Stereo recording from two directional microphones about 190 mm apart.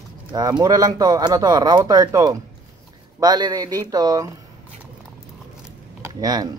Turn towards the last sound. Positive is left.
turn(degrees=-20)  # may be behind; listen again after turning